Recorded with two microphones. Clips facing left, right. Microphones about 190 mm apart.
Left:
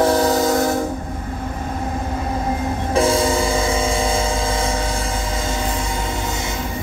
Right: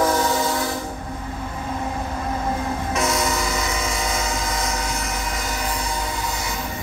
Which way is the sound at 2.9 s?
30° left (ahead or behind).